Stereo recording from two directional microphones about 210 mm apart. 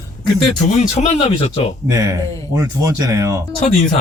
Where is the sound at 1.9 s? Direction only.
15° right (ahead or behind).